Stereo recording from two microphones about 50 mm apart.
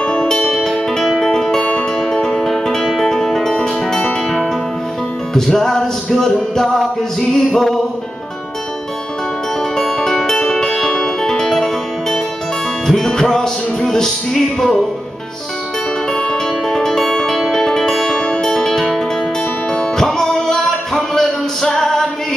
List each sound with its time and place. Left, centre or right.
0.0 s music: centre
5.3 s music: centre
9.8 s music: centre
16.1 s music: centre